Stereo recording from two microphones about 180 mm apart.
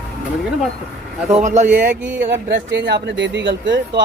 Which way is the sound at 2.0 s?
10° right (ahead or behind).